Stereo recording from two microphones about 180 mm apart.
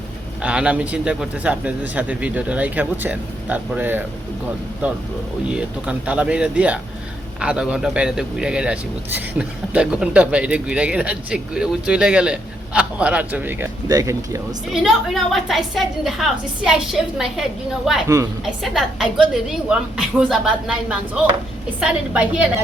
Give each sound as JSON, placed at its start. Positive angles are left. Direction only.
{"t": 0.4, "sound": "speech", "side_deg": -5}
{"t": 5.5, "sound": "speech", "side_deg": -5}
{"t": 14.7, "sound": "a woman's voice", "side_deg": 0}